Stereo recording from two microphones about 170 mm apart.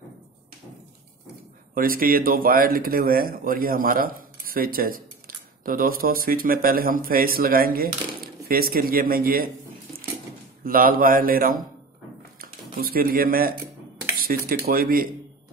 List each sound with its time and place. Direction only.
1.8 s speech: 55° right (ahead or behind)
10.6 s speech: 60° right (ahead or behind)